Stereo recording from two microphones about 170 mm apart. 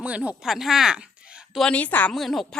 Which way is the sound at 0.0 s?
5° right (ahead or behind).